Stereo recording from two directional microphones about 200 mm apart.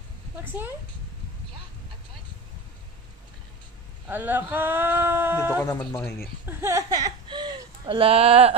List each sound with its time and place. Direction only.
0.4 s speech: 10° right (ahead or behind)
4.1 s speech: 10° right (ahead or behind)
5.6 s speech: 20° left (ahead or behind)
6.2 s speech: 10° right (ahead or behind); by 8.5 s 30° right (ahead or behind)